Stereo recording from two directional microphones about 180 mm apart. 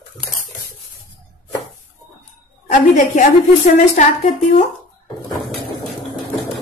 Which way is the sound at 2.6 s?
45° left (ahead or behind).